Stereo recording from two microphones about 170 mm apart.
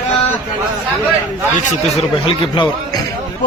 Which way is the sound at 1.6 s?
35° left (ahead or behind).